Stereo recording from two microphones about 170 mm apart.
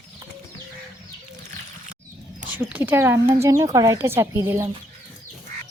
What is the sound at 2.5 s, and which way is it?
Speech, 10° right (ahead or behind).